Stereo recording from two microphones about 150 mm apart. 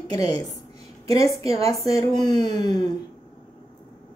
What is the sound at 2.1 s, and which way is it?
Speech, 30° left (ahead or behind).